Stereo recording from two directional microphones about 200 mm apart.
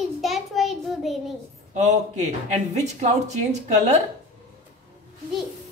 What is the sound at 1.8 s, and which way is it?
Speech, 35° right (ahead or behind).